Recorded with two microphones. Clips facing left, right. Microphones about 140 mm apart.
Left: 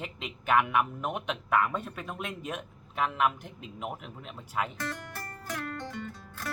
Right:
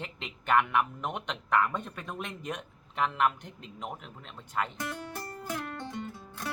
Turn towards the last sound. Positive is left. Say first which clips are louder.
# right 1 dB
turn(degrees=-20)  # may be behind; listen again after turning